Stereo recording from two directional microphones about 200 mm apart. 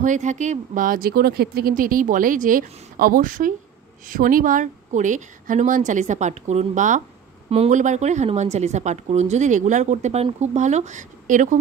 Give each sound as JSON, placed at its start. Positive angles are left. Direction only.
{"t": 0.0, "sound": "a woman's voice", "side_deg": -40}